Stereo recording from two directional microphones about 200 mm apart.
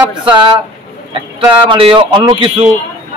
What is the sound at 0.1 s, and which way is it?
A man's voice, 20° right (ahead or behind).